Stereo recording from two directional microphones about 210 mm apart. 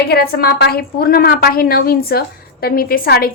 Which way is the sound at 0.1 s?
45° left (ahead or behind).